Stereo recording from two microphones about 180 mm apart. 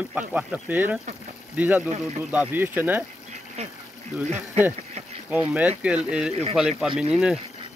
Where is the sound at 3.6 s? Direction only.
35° right (ahead or behind).